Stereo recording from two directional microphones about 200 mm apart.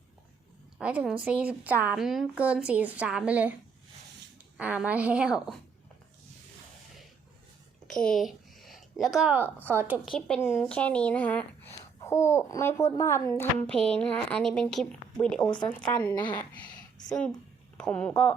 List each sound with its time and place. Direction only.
0.8 s a woman's voice: 5° right (ahead or behind)
4.5 s speech: 5° right (ahead or behind)
7.9 s a sound: 5° left (ahead or behind)
9.6 s a woman's voice: 10° right (ahead or behind)
10.2 s a child's voice: 5° left (ahead or behind)
16.1 s speech: 20° left (ahead or behind)
17.7 s speech: 5° left (ahead or behind)